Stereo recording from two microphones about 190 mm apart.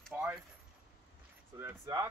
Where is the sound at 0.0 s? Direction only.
5° right (ahead or behind).